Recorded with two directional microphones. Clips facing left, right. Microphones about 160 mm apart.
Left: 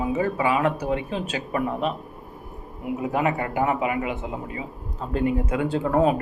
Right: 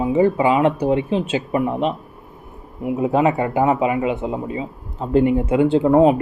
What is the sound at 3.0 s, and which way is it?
Speech, 25° right (ahead or behind).